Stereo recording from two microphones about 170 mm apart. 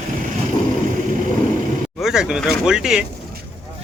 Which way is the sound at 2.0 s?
5° right (ahead or behind).